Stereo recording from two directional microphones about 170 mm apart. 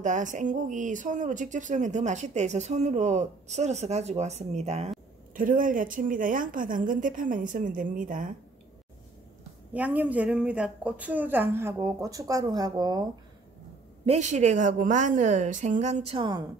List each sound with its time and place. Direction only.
0.0 s speech: 45° right (ahead or behind)
5.3 s speech: 55° right (ahead or behind)
9.8 s a woman's voice: 10° right (ahead or behind)
14.0 s speech: 40° right (ahead or behind)